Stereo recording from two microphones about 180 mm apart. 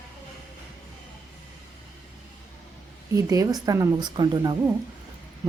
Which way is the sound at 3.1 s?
20° right (ahead or behind).